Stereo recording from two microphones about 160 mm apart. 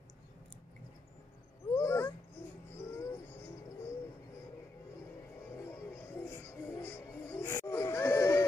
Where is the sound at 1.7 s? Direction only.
15° left (ahead or behind).